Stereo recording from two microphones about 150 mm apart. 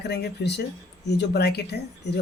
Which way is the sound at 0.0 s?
90° left.